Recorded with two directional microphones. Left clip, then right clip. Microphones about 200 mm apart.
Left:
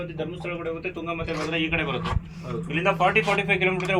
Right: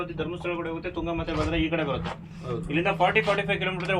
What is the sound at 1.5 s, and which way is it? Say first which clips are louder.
Speech: left 3 dB; 15° right (ahead or behind).